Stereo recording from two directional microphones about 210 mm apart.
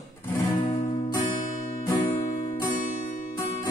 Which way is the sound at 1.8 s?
20° left (ahead or behind).